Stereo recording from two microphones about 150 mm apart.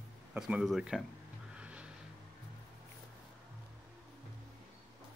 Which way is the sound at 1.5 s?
10° right (ahead or behind).